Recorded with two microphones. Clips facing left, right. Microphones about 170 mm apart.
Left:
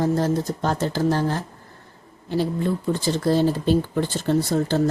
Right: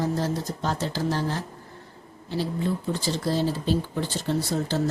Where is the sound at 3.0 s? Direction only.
55° left (ahead or behind).